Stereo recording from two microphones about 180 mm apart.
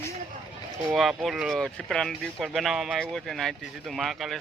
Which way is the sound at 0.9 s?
Centre (ahead or behind).